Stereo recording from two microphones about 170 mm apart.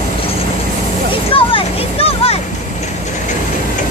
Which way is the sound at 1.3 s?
35° left (ahead or behind).